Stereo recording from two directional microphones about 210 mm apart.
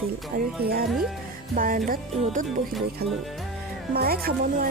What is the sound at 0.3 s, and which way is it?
Speech, 45° right (ahead or behind).